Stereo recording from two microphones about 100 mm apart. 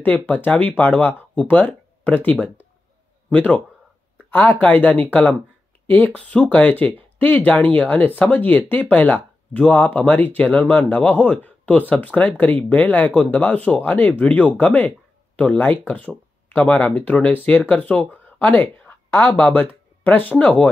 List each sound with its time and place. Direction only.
0.0 s a man's voice: 15° left (ahead or behind)